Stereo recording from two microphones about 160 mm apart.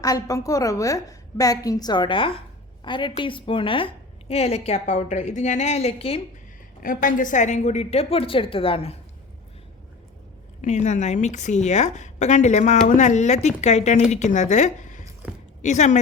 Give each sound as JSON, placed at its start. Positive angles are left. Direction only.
{"t": 0.0, "sound": "a woman's voice", "side_deg": 20}
{"t": 6.8, "sound": "a woman's voice", "side_deg": 60}
{"t": 10.6, "sound": "a woman's voice", "side_deg": 45}